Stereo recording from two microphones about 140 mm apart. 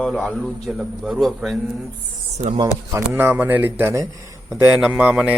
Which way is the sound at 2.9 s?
15° right (ahead or behind).